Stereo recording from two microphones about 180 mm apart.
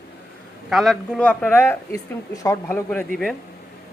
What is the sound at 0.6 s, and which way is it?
Speech, centre (ahead or behind).